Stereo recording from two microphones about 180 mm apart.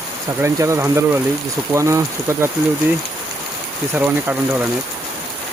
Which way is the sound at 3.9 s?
10° right (ahead or behind).